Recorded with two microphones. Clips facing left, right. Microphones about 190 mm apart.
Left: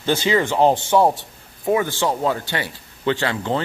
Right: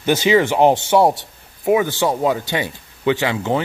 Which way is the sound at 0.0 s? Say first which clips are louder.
Right 4 dB; 20° right (ahead or behind).